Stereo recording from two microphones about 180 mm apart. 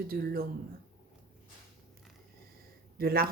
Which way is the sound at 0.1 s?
55° right (ahead or behind).